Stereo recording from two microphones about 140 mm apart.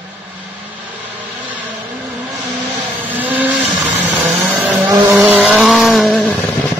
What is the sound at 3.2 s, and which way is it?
Vehicle, 10° right (ahead or behind).